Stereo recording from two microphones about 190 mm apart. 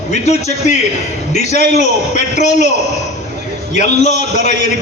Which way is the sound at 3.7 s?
40° left (ahead or behind).